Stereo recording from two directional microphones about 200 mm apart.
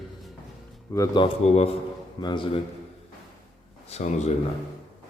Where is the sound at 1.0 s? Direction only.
25° left (ahead or behind).